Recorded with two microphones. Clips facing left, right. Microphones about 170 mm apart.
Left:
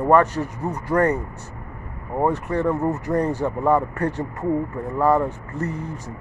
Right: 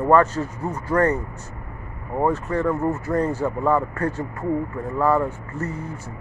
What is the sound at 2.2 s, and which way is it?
Speech, 15° left (ahead or behind).